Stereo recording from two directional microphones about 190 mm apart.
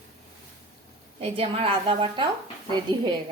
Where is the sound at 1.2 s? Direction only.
30° right (ahead or behind).